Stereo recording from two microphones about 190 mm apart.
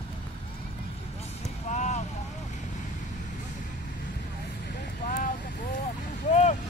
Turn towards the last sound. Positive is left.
turn(degrees=35)  # may be behind; listen again after turning